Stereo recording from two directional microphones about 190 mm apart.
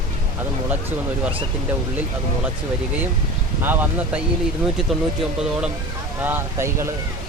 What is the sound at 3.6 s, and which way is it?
Speech, 10° right (ahead or behind).